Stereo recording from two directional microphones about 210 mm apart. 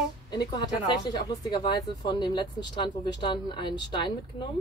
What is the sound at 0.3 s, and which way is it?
Speech, 20° left (ahead or behind).